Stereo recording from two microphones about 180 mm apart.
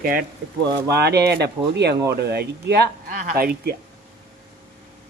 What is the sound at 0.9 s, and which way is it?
Speech, 65° right (ahead or behind).